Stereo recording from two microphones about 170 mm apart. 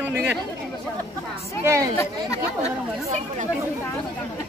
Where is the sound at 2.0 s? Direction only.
20° left (ahead or behind).